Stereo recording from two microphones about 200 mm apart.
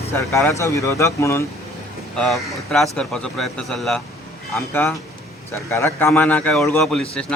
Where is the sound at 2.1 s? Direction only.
Centre (ahead or behind).